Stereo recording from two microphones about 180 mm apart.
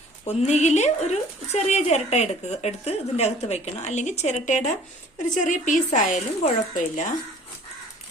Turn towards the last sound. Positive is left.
turn(degrees=45)  # may be behind; listen again after turning